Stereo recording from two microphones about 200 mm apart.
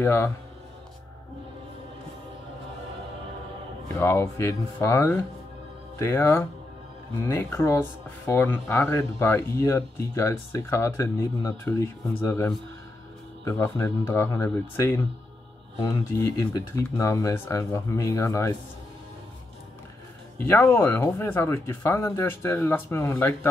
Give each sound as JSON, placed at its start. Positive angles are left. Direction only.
{"t": 0.0, "sound": "speech", "side_deg": 10}
{"t": 3.9, "sound": "speech", "side_deg": 15}
{"t": 20.3, "sound": "speech", "side_deg": 10}